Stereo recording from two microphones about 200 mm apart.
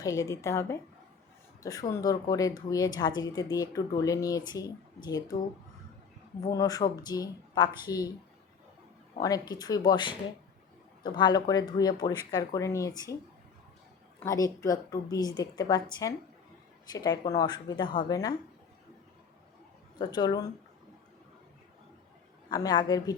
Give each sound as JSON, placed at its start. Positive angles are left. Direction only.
{"t": 0.0, "sound": "speech", "side_deg": 15}
{"t": 6.5, "sound": "speech", "side_deg": 15}
{"t": 9.2, "sound": "speech", "side_deg": 20}
{"t": 14.3, "sound": "speech", "side_deg": 15}
{"t": 20.0, "sound": "speech", "side_deg": 20}
{"t": 22.4, "sound": "speech", "side_deg": 20}